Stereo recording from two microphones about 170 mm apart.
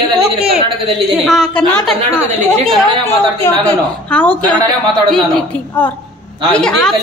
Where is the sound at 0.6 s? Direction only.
30° right (ahead or behind).